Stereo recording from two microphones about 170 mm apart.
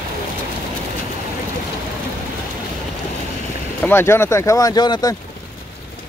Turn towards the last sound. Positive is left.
turn(degrees=25)  # may be behind; listen again after turning